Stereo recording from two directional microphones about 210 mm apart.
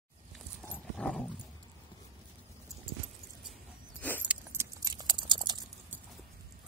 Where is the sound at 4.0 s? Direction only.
10° left (ahead or behind).